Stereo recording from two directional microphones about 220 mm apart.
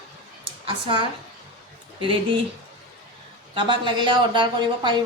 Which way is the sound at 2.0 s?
25° right (ahead or behind).